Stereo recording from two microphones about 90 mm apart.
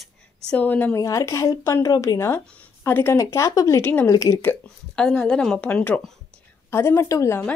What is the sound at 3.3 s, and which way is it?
Speech, 40° left (ahead or behind).